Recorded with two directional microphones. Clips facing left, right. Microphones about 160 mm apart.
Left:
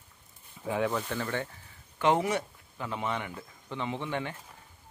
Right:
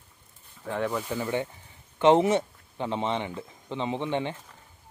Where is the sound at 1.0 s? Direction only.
10° right (ahead or behind).